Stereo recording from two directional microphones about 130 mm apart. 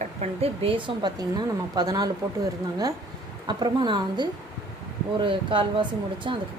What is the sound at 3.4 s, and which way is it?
Speech, 35° right (ahead or behind).